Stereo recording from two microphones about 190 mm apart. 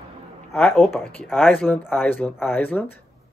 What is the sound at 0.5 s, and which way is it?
Speech, 10° left (ahead or behind).